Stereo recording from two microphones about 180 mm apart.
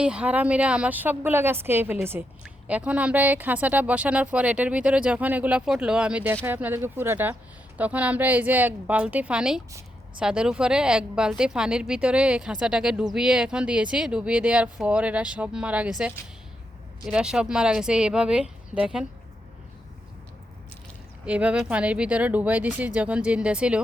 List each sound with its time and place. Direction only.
0.0 s speech: 5° right (ahead or behind)
21.2 s speech: 5° right (ahead or behind)